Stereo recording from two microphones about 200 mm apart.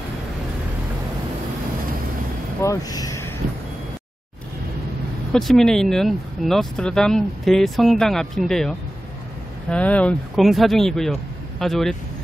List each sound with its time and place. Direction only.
2.6 s speech: 15° left (ahead or behind)
5.3 s speech: centre (ahead or behind)